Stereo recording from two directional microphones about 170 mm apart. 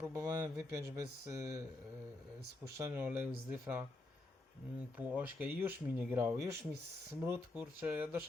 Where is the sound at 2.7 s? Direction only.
15° right (ahead or behind).